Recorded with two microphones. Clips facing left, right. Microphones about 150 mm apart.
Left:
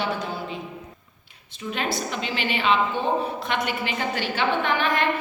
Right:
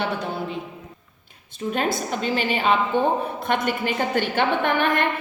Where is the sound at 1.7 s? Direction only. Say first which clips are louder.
Right 3 dB; 45° right (ahead or behind).